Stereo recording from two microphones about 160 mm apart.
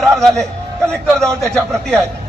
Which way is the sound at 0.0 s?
Centre (ahead or behind).